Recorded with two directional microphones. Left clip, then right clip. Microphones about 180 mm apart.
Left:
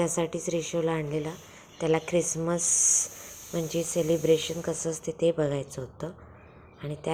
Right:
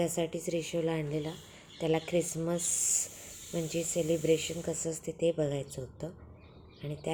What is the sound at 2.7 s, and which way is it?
Speech, 55° right (ahead or behind).